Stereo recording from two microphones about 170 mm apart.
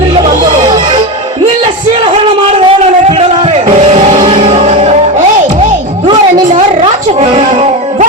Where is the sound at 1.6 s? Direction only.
35° right (ahead or behind).